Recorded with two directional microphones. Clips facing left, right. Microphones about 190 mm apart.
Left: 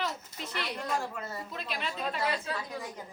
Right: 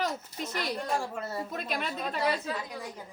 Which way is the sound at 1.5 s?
45° right (ahead or behind).